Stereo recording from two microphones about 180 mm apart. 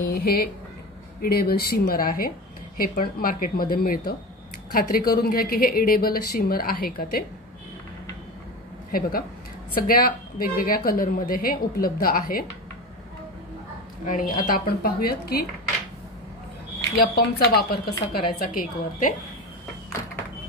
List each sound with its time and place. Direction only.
0.1 s a woman's voice: 55° left (ahead or behind)
8.9 s a woman's voice: 55° left (ahead or behind)
14.0 s a woman's voice: 50° left (ahead or behind)
17.0 s a woman's voice: 60° left (ahead or behind)